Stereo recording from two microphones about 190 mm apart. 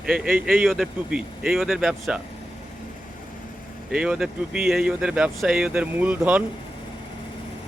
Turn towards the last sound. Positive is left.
turn(degrees=-10)  # may be behind; listen again after turning